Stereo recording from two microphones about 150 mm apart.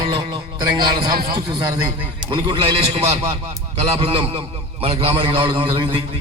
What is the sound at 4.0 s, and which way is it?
A man's voice, 40° right (ahead or behind).